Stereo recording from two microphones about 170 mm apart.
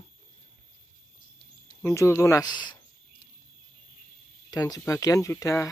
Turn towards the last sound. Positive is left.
turn(degrees=15)  # may be behind; listen again after turning